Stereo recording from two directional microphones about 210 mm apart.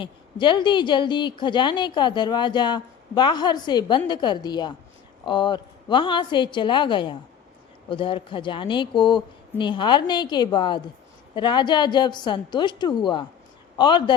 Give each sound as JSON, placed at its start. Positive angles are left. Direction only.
{"t": 0.0, "sound": "a woman's voice", "side_deg": 25}